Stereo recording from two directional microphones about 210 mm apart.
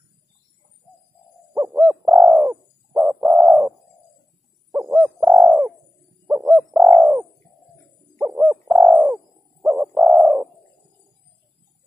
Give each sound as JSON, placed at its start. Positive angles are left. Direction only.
{"t": 1.5, "sound": "owl", "side_deg": -5}
{"t": 2.5, "sound": "bird", "side_deg": -15}
{"t": 3.2, "sound": "bird", "side_deg": -5}
{"t": 4.7, "sound": "owl", "side_deg": -10}
{"t": 6.3, "sound": "bird", "side_deg": -5}